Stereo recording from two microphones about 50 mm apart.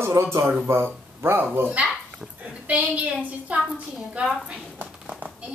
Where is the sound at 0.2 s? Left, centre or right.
Right.